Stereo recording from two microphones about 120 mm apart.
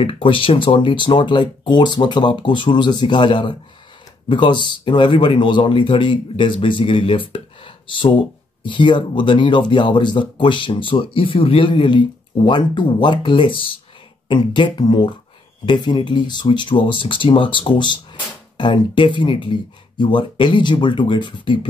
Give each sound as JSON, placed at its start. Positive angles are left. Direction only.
{"t": 0.0, "sound": "speech", "side_deg": 45}